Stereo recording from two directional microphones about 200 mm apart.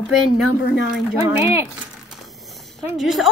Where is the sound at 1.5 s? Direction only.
10° right (ahead or behind).